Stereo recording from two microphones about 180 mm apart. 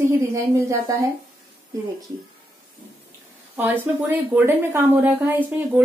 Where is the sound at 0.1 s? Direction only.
15° right (ahead or behind).